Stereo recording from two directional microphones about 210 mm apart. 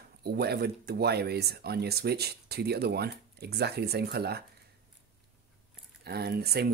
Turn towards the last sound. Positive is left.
turn(degrees=-50)  # may be behind; listen again after turning